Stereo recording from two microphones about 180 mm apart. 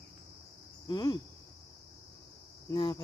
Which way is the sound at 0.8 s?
25° left (ahead or behind).